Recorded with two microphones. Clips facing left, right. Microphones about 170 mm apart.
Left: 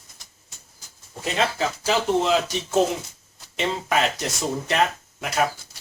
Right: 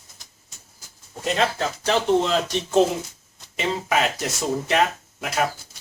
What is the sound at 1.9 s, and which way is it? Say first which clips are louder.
Speech: right 1 dB; 5° left (ahead or behind).